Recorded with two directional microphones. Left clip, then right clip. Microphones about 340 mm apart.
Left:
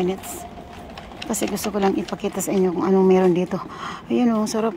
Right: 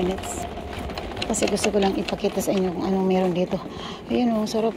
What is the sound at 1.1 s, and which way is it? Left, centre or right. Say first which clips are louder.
A woman's voice: right 2 dB; centre.